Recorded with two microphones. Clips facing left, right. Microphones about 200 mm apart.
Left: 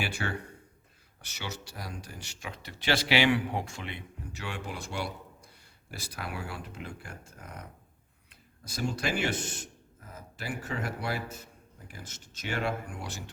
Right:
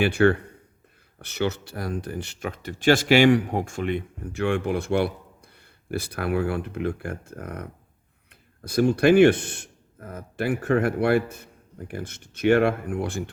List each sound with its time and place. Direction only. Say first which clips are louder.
0.0 s speech: right 15 dB; 60° right (ahead or behind)